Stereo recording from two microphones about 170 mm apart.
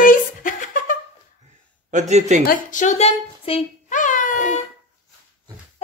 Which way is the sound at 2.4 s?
50° left (ahead or behind).